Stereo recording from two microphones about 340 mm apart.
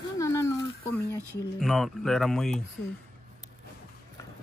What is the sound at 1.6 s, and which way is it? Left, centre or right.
Speech, centre.